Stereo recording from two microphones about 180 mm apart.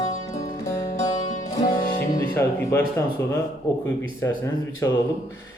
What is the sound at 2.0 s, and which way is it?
Speech, 15° left (ahead or behind).